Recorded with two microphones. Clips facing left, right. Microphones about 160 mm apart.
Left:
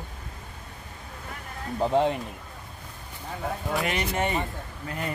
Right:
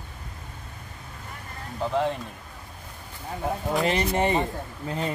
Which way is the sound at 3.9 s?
35° right (ahead or behind).